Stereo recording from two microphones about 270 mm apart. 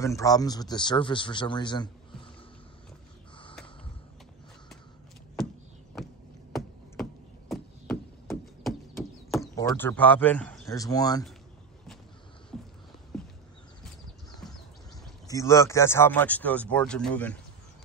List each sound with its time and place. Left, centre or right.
0.0 s speech: centre
6.5 s chop: centre
9.6 s speech: centre
13.1 s a sound: centre
15.2 s speech: centre